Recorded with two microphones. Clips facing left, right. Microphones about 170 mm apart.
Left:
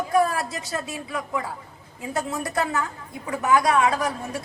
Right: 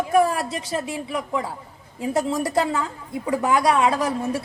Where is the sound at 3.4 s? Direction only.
25° right (ahead or behind).